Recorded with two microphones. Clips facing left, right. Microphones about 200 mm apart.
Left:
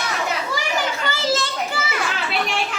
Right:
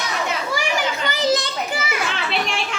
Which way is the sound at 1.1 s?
15° right (ahead or behind).